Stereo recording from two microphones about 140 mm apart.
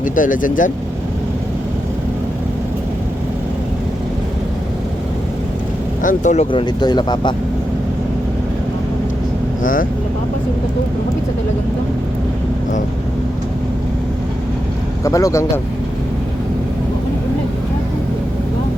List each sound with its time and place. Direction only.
0.0 s speech: 70° left (ahead or behind)
6.0 s speech: 65° left (ahead or behind)
6.5 s speech: 35° left (ahead or behind)
15.0 s speech: 25° left (ahead or behind)